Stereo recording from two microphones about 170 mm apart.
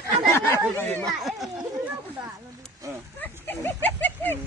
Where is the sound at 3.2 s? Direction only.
10° left (ahead or behind).